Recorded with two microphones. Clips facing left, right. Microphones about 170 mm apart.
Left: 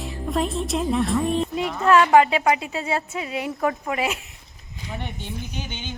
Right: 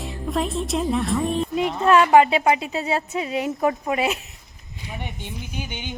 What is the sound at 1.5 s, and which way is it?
Speech, 20° right (ahead or behind).